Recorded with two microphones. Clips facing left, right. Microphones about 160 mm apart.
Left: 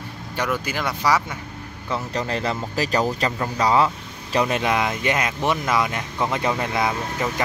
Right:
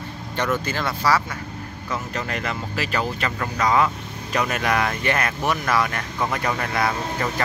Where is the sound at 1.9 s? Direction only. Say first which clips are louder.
Left 3 dB; 30° left (ahead or behind).